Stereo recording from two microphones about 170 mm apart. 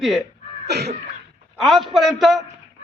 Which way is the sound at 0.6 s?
75° right (ahead or behind).